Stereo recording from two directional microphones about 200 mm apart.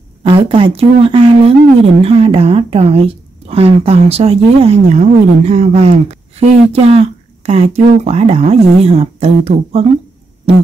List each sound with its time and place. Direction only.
0.2 s a woman's voice: 25° right (ahead or behind)